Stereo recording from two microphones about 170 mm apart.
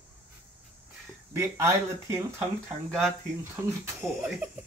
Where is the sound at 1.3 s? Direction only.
15° right (ahead or behind).